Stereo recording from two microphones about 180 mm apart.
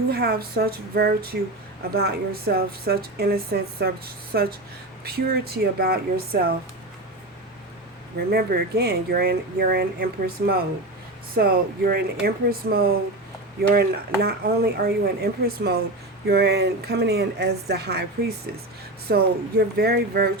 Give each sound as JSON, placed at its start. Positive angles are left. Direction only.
{"t": 0.1, "sound": "a woman's voice", "side_deg": -60}
{"t": 8.3, "sound": "a woman's voice", "side_deg": -60}